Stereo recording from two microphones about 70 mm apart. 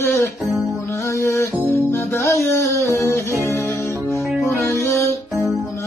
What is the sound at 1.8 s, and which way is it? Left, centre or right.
Music, left.